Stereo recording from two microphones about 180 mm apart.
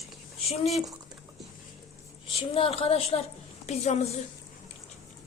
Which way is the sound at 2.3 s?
30° left (ahead or behind).